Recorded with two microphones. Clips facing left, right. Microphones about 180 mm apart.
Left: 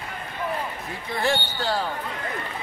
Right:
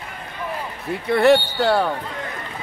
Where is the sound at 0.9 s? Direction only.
65° right (ahead or behind).